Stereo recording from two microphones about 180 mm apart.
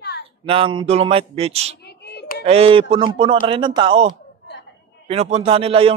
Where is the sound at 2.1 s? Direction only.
65° left (ahead or behind).